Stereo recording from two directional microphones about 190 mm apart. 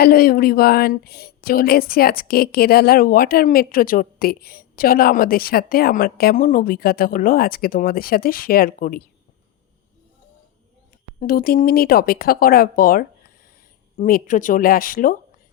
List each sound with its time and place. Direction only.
0.0 s speech: 50° left (ahead or behind)
11.2 s speech: 50° left (ahead or behind)